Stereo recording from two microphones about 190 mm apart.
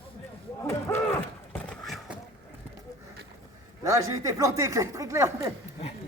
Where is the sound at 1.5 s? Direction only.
5° left (ahead or behind).